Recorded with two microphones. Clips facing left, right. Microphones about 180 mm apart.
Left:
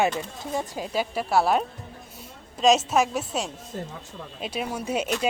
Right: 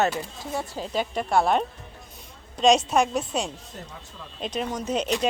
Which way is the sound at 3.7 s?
30° left (ahead or behind).